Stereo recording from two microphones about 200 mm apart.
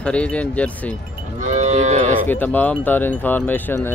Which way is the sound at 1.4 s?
35° right (ahead or behind).